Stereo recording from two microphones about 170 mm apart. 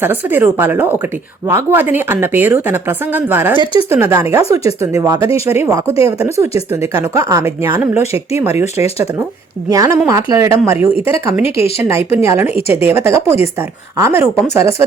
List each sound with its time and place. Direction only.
0.0 s speech: 10° right (ahead or behind)
9.6 s speech: 20° right (ahead or behind)
11.4 s speech: 35° left (ahead or behind)
11.8 s speech: 15° right (ahead or behind)
12.5 s speech: 35° left (ahead or behind)
13.1 s speech: 15° right (ahead or behind)